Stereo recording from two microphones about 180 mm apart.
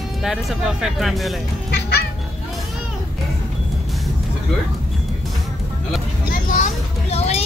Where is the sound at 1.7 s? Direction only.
65° left (ahead or behind).